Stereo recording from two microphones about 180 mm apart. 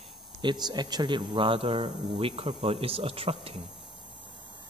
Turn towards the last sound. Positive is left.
turn(degrees=-30)  # may be behind; listen again after turning